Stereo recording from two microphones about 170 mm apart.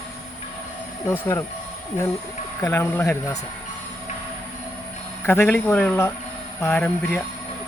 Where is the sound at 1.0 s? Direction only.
15° left (ahead or behind).